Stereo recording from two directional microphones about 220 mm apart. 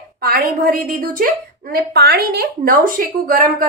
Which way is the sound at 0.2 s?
40° right (ahead or behind).